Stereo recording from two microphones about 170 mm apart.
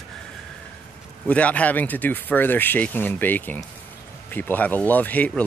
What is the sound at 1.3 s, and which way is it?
Speech, 10° left (ahead or behind).